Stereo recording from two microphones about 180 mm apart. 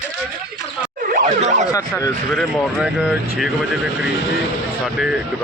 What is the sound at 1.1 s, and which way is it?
Ambulance, 40° right (ahead or behind).